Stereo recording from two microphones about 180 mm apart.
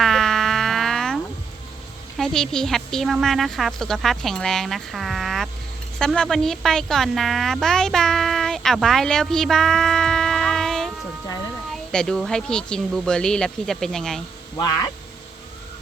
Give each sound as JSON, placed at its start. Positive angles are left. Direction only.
{"t": 0.0, "sound": "insect", "side_deg": 0}
{"t": 2.1, "sound": "a woman's voice", "side_deg": 0}
{"t": 14.5, "sound": "speech", "side_deg": 20}